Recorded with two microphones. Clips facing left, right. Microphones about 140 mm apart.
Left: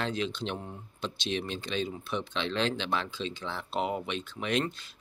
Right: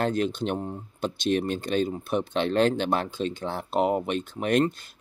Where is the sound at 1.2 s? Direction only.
50° right (ahead or behind).